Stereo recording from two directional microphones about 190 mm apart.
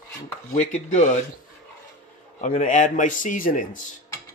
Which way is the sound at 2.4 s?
40° left (ahead or behind).